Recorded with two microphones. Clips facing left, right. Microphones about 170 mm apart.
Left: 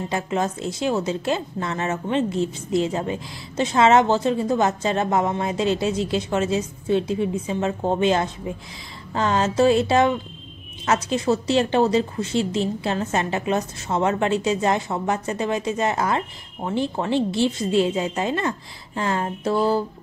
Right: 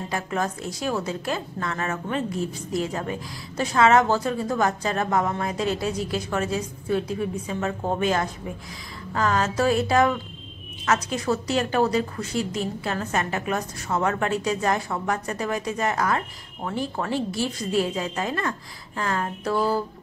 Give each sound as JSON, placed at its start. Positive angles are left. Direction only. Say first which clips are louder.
{"t": 0.1, "sound": "a woman's voice", "louder": "left 2 dB", "side_deg": 25}